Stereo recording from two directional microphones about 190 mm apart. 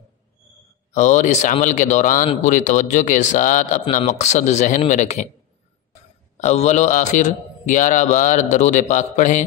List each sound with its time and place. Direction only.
0.9 s a man's voice: 40° left (ahead or behind)
6.3 s a man's voice: 35° left (ahead or behind)